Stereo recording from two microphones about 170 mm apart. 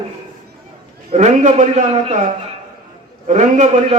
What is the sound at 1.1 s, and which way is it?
A man's voice, 45° right (ahead or behind).